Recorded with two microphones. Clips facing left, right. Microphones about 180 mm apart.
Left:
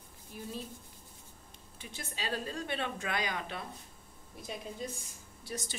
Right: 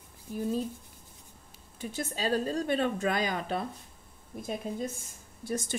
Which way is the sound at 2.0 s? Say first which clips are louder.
Right 8 dB; 40° right (ahead or behind).